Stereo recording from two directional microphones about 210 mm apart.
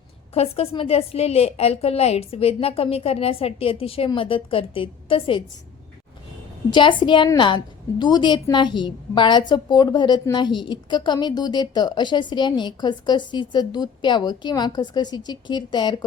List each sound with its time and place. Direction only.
0.3 s a woman's voice: 30° left (ahead or behind)
6.7 s a woman's voice: 20° left (ahead or behind)